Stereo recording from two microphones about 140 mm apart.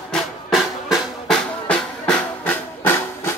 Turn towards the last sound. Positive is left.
turn(degrees=15)  # may be behind; listen again after turning